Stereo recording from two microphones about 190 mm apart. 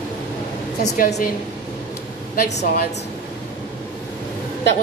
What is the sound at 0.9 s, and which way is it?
Speech, 45° left (ahead or behind).